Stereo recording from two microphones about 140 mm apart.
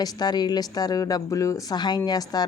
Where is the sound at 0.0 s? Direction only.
30° left (ahead or behind).